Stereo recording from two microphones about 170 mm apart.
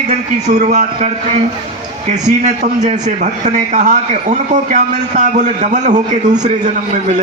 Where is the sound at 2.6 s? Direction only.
45° right (ahead or behind).